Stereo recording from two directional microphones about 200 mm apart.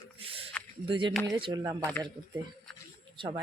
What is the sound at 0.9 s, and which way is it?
Speech, 25° right (ahead or behind).